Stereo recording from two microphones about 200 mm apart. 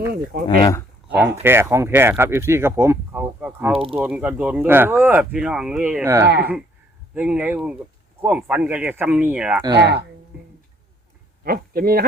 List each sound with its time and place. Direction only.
0.6 s a sound: 20° left (ahead or behind)
1.4 s speech: 10° right (ahead or behind)
3.7 s speech: 30° right (ahead or behind)
3.9 s speech: 5° right (ahead or behind)
6.2 s speech: 55° right (ahead or behind)
7.1 s speech: 5° right (ahead or behind)
9.7 s speech: 55° right (ahead or behind)
11.4 s speech: 50° right (ahead or behind)